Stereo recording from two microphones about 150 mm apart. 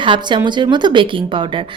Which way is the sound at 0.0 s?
30° right (ahead or behind).